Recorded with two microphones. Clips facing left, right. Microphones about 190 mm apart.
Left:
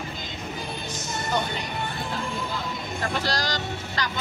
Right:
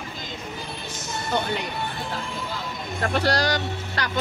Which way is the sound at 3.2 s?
60° right (ahead or behind).